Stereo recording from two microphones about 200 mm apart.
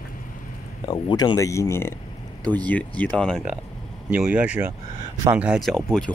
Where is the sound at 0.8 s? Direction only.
25° left (ahead or behind).